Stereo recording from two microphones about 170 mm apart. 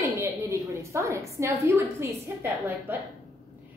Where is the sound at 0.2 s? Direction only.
15° right (ahead or behind).